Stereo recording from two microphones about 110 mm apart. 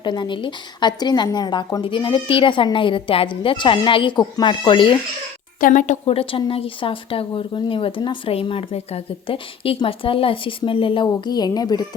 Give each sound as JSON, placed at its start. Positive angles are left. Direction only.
{"t": 0.0, "sound": "speech", "side_deg": 45}
{"t": 5.8, "sound": "a woman's voice", "side_deg": 75}